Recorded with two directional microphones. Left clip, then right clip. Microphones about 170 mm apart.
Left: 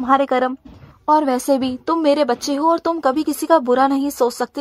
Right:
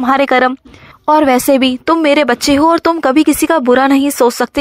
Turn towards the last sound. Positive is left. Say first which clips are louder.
# right 7 dB
turn(degrees=-15)  # may be behind; listen again after turning